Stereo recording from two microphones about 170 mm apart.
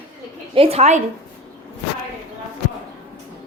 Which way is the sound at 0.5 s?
35° right (ahead or behind).